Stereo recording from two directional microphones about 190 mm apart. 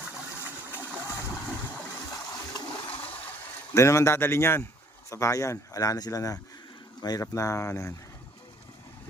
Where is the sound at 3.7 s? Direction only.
15° left (ahead or behind).